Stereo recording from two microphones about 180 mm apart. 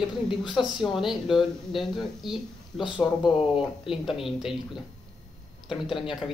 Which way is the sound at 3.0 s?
25° left (ahead or behind).